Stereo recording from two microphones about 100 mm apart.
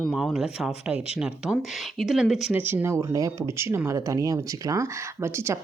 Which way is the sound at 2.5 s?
20° right (ahead or behind).